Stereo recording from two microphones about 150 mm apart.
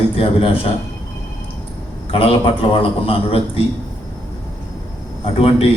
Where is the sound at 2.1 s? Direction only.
40° left (ahead or behind).